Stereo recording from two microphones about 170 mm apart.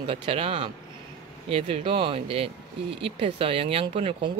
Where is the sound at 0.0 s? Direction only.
30° right (ahead or behind).